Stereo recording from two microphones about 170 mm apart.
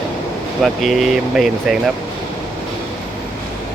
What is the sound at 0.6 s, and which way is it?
Speech, centre (ahead or behind).